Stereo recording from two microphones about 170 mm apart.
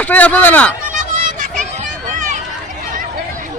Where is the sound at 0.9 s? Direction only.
50° right (ahead or behind).